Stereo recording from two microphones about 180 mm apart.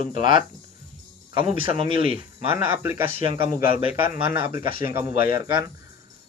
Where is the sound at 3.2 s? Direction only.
30° right (ahead or behind).